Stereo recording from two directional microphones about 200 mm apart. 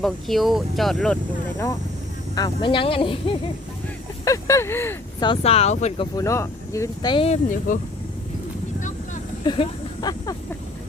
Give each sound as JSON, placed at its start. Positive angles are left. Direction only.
{"t": 0.0, "sound": "speech", "side_deg": 0}
{"t": 2.3, "sound": "speech", "side_deg": 20}
{"t": 4.3, "sound": "speech", "side_deg": 15}
{"t": 5.2, "sound": "speech", "side_deg": 30}
{"t": 6.1, "sound": "speech", "side_deg": 15}
{"t": 7.7, "sound": "speech", "side_deg": 40}
{"t": 9.4, "sound": "speech", "side_deg": 25}